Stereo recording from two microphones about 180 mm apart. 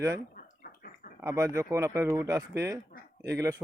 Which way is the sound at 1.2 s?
15° right (ahead or behind).